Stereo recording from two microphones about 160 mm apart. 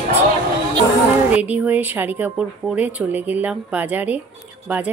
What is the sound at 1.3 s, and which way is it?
Speech, 10° right (ahead or behind).